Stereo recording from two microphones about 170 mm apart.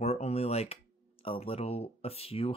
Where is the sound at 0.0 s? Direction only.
40° left (ahead or behind).